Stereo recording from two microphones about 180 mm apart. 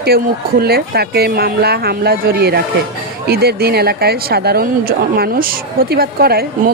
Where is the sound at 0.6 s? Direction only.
60° right (ahead or behind).